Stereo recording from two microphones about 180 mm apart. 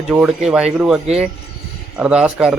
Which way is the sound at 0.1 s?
10° right (ahead or behind).